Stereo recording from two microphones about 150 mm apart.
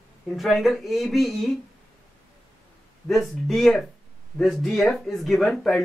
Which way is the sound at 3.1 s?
Centre (ahead or behind).